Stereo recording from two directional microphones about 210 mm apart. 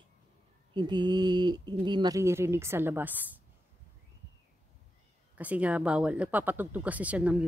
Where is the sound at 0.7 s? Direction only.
20° right (ahead or behind).